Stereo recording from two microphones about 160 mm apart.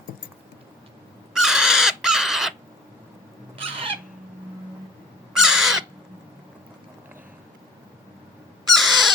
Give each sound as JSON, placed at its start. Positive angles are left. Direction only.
{"t": 1.3, "sound": "crow", "side_deg": -5}
{"t": 3.6, "sound": "bird", "side_deg": -35}
{"t": 5.3, "sound": "crow", "side_deg": -5}
{"t": 8.7, "sound": "crow", "side_deg": 0}